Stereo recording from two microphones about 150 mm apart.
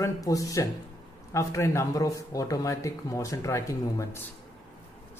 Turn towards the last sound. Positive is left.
turn(degrees=20)  # may be behind; listen again after turning